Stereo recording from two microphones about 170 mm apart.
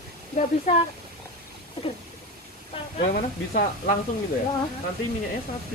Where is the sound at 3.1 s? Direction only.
50° left (ahead or behind).